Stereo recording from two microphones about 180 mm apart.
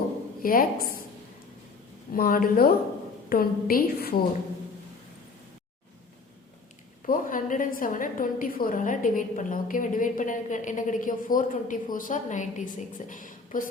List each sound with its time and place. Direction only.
0.4 s a woman's voice: 50° left (ahead or behind)
2.1 s a woman's voice: 50° left (ahead or behind)
7.0 s a woman's voice: 50° left (ahead or behind)